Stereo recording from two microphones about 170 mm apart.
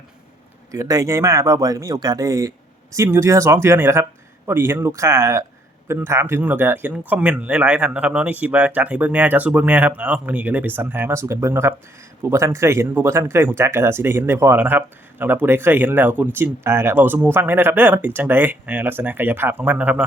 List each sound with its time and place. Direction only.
0.7 s speech: 20° right (ahead or behind)